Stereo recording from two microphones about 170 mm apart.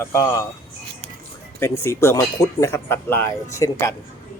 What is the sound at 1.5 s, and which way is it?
Speech, 15° left (ahead or behind).